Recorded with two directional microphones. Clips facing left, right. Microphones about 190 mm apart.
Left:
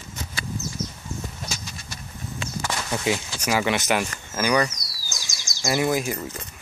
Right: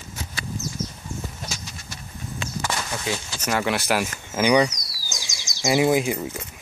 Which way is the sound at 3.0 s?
5° left (ahead or behind).